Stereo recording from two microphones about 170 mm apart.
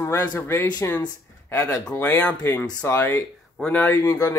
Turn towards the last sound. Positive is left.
turn(degrees=15)  # may be behind; listen again after turning